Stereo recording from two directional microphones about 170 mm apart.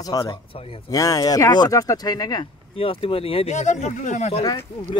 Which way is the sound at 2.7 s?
35° left (ahead or behind).